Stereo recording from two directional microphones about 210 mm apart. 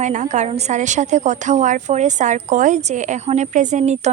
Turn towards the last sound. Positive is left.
turn(degrees=-35)  # may be behind; listen again after turning